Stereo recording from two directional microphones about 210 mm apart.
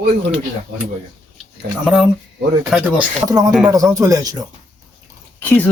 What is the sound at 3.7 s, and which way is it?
Speech, 15° right (ahead or behind).